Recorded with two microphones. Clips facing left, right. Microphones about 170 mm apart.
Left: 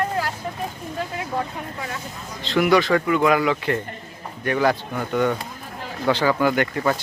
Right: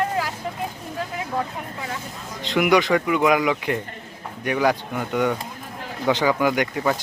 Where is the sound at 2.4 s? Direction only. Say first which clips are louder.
Left 1 dB; 15° right (ahead or behind).